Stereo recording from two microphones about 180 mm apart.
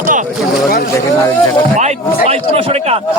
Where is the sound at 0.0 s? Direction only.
45° right (ahead or behind).